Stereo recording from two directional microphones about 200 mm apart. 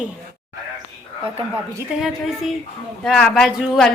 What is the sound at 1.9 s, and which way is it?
A woman's voice, 5° right (ahead or behind).